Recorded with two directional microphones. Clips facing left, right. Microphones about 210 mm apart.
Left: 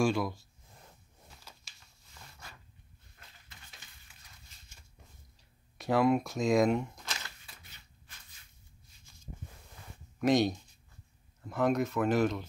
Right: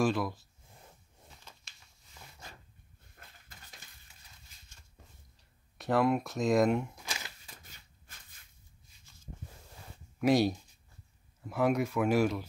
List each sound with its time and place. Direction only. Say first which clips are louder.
0.0 s speech: left 1 dB; centre (ahead or behind)
1.3 s a sound: even; 5° left (ahead or behind)
3.2 s dishes: right 3 dB; 50° right (ahead or behind)
5.8 s speech: left 1 dB; centre (ahead or behind)
7.4 s shuffling cards: right 2 dB; 45° right (ahead or behind)
10.1 s speech: even; 5° right (ahead or behind)